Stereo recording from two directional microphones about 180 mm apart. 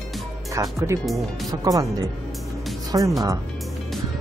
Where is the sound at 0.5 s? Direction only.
15° right (ahead or behind).